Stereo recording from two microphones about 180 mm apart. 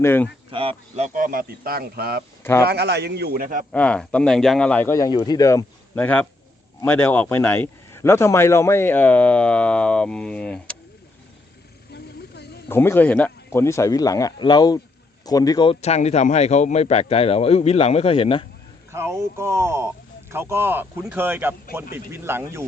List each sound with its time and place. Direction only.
0.0 s speech: 10° left (ahead or behind)
0.5 s speech: 30° right (ahead or behind); by 2.2 s 60° right (ahead or behind)
2.4 s speech: 15° left (ahead or behind)
2.6 s a man's voice: 65° right (ahead or behind)
3.7 s speech: 5° left (ahead or behind)
11.9 s a sound: 65° left (ahead or behind)
12.6 s a man's voice: 10° left (ahead or behind); by 18.4 s 30° left (ahead or behind)
18.9 s speech: 15° right (ahead or behind)